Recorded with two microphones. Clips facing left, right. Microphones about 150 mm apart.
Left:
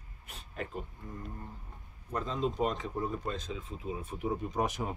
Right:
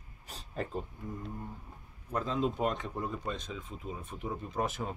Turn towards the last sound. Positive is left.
turn(degrees=15)  # may be behind; listen again after turning